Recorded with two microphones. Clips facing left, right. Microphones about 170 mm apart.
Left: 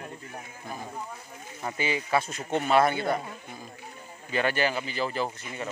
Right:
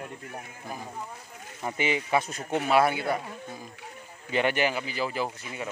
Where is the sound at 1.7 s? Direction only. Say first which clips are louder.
Right 1 dB; 20° right (ahead or behind).